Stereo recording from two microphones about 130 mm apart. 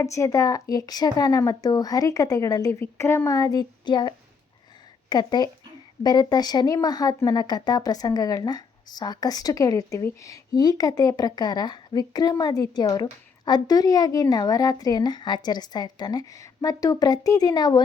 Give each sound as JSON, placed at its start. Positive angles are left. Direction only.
{"t": 0.2, "sound": "speech", "side_deg": 25}